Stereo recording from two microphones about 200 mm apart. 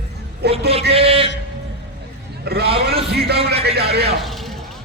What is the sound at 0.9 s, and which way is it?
Speech, 30° right (ahead or behind).